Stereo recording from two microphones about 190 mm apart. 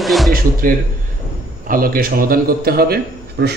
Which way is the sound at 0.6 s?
50° right (ahead or behind).